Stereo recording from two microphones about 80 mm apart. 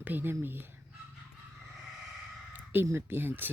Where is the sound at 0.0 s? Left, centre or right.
Right.